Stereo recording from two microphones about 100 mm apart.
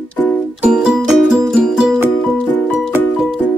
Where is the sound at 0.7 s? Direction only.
5° right (ahead or behind).